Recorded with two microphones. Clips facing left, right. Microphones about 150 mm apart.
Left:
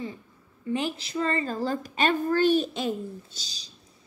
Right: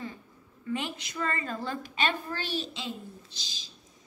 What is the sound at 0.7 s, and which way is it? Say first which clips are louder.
A woman's voice: left 5 dB; 35° left (ahead or behind).